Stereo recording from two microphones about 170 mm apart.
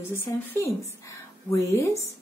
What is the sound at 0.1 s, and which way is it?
Speech, 15° left (ahead or behind).